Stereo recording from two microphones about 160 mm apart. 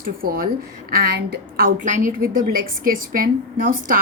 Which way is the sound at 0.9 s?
80° right.